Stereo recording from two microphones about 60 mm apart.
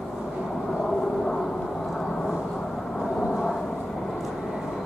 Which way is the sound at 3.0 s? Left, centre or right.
Centre.